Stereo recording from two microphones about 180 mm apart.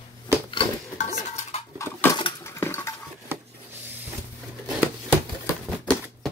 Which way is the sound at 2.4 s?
15° left (ahead or behind).